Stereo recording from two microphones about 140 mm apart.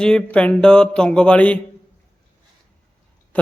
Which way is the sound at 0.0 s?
5° left (ahead or behind).